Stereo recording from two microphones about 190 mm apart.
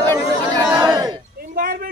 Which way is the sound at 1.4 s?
50° right (ahead or behind).